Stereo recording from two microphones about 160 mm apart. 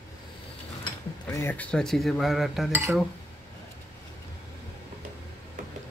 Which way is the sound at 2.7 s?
15° right (ahead or behind).